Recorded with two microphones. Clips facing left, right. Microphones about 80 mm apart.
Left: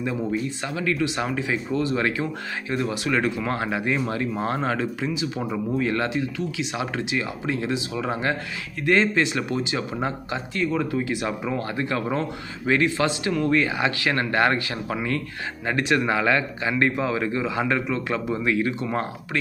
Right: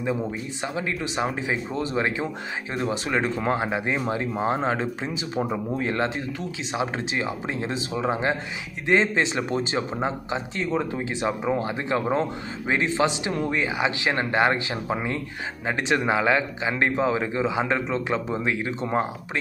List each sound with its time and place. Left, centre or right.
0.7 s speech: right